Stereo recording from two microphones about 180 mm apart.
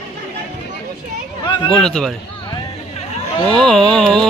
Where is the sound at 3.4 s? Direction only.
5° left (ahead or behind).